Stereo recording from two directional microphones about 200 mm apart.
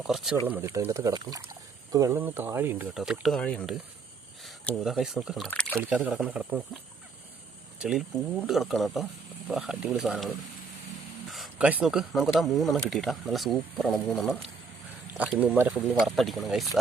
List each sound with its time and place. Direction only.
0.1 s speech: centre (ahead or behind)
7.8 s speech: 5° right (ahead or behind)
11.3 s speech: 5° right (ahead or behind)
16.0 s speech: centre (ahead or behind)